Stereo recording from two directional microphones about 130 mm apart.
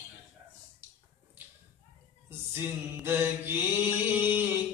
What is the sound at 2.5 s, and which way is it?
Mantra, 15° right (ahead or behind).